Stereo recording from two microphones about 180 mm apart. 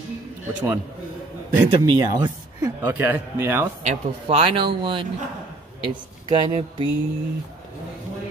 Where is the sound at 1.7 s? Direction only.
25° right (ahead or behind).